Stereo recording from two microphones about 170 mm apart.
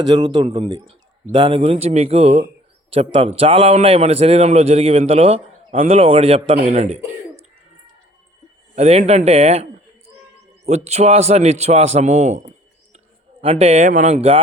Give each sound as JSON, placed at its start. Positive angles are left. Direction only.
{"t": 0.1, "sound": "a man's voice", "side_deg": -25}
{"t": 8.7, "sound": "a man's voice", "side_deg": -40}
{"t": 10.7, "sound": "a man's voice", "side_deg": -40}